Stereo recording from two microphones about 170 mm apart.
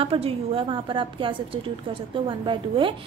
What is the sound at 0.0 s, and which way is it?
A woman's voice, 35° right (ahead or behind).